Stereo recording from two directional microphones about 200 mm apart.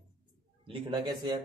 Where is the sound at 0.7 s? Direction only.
20° right (ahead or behind).